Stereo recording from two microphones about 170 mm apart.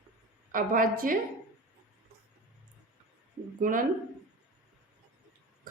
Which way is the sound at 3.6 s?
55° right (ahead or behind).